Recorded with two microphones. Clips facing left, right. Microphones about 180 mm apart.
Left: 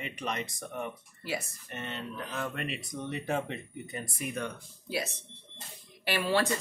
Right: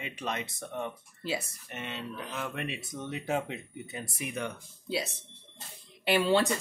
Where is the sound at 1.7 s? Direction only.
10° right (ahead or behind).